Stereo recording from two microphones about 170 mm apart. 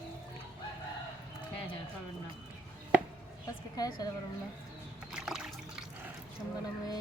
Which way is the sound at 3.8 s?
20° left (ahead or behind).